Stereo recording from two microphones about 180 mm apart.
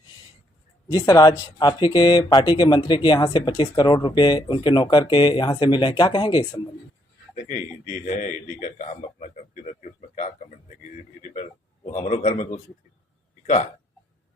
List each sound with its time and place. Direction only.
0.9 s speech: 20° left (ahead or behind)
7.3 s a man's voice: 45° left (ahead or behind)
11.9 s a man's voice: 40° left (ahead or behind)